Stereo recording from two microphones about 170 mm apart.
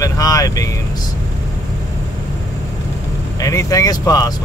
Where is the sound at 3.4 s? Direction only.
20° left (ahead or behind).